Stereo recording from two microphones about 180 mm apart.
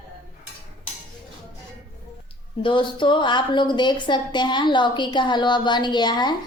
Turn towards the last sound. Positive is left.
turn(degrees=25)  # may be behind; listen again after turning